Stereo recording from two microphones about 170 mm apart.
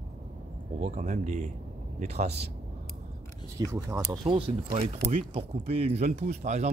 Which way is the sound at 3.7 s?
15° right (ahead or behind).